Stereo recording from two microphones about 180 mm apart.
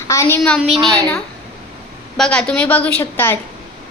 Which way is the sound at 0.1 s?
15° left (ahead or behind).